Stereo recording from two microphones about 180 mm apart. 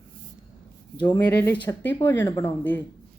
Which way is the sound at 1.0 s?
10° left (ahead or behind).